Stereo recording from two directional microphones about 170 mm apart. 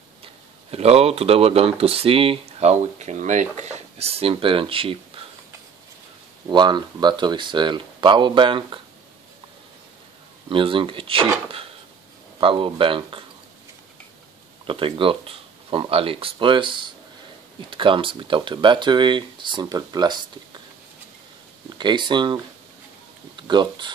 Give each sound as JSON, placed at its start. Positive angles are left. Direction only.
{"t": 0.2, "sound": "speech", "side_deg": -35}
{"t": 6.5, "sound": "speech", "side_deg": -25}
{"t": 10.5, "sound": "speech", "side_deg": -30}
{"t": 12.4, "sound": "speech", "side_deg": -30}
{"t": 14.7, "sound": "speech", "side_deg": -30}
{"t": 21.6, "sound": "speech", "side_deg": -25}